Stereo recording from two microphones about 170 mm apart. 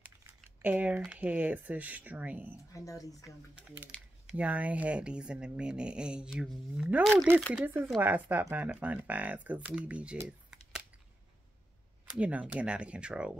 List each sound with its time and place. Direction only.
0.0 s speech: 10° right (ahead or behind)
2.7 s speech: 20° left (ahead or behind)
4.3 s speech: 10° right (ahead or behind)
7.5 s speech: 10° right (ahead or behind)
12.1 s speech: 10° right (ahead or behind)